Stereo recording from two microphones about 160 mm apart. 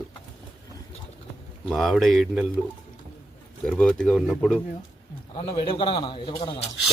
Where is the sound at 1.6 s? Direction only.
Centre (ahead or behind).